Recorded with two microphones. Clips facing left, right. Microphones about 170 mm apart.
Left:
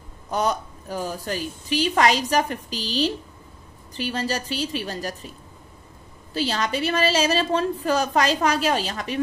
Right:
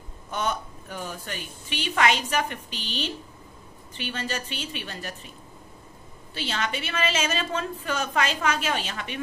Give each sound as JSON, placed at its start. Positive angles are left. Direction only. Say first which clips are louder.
{"t": 0.3, "sound": "a woman's voice", "louder": "left 5 dB", "side_deg": 35}
{"t": 6.3, "sound": "a woman's voice", "louder": "left 6 dB", "side_deg": 35}